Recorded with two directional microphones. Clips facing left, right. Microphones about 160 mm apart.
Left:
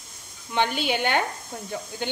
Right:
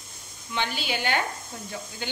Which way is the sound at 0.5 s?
55° left (ahead or behind).